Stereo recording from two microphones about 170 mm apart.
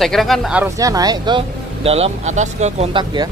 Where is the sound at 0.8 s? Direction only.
20° right (ahead or behind); by 2.9 s 45° right (ahead or behind).